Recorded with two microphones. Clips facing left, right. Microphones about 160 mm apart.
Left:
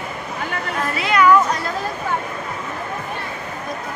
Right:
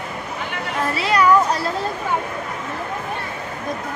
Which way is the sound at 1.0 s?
35° right (ahead or behind).